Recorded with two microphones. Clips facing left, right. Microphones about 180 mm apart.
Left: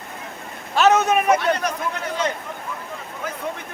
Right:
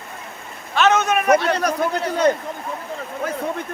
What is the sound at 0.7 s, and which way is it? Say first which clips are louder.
Speech: left 1 dB; 35° left (ahead or behind).